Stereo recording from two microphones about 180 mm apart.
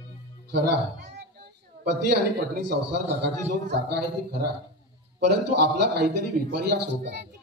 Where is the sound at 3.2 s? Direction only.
70° right (ahead or behind).